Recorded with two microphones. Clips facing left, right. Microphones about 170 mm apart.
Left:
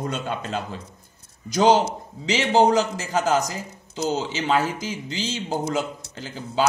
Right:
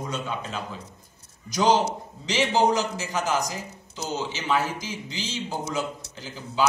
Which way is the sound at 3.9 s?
60° left (ahead or behind).